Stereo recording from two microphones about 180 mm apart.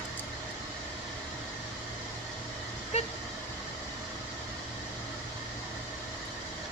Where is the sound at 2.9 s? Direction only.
35° left (ahead or behind).